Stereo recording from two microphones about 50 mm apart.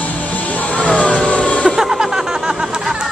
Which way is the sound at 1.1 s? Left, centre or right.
Centre.